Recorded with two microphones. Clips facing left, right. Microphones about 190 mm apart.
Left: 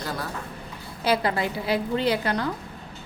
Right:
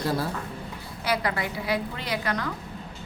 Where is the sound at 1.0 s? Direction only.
30° left (ahead or behind).